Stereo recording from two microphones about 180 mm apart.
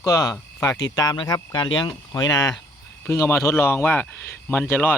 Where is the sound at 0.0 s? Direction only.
20° left (ahead or behind).